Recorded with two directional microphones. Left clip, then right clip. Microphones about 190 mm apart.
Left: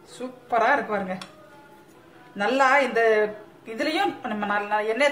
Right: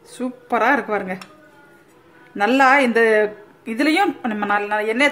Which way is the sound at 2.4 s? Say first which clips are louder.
Right 5 dB; 55° right (ahead or behind).